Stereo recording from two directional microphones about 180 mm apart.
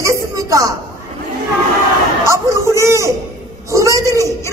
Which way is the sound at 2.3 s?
15° right (ahead or behind).